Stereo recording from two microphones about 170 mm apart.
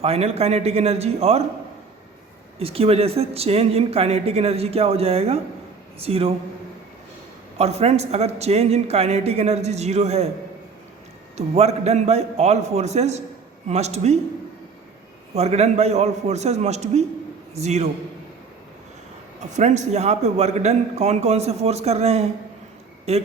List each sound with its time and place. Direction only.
0.0 s a man's voice: 35° right (ahead or behind)
2.6 s a man's voice: 35° right (ahead or behind)
7.6 s a man's voice: 40° right (ahead or behind)
11.3 s a man's voice: 40° right (ahead or behind)
15.4 s a man's voice: 40° right (ahead or behind)
19.4 s a man's voice: 45° right (ahead or behind)